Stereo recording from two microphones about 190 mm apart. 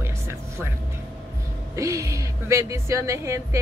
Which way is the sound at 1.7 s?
15° right (ahead or behind).